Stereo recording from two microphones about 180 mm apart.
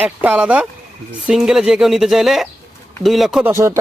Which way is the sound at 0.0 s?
10° right (ahead or behind).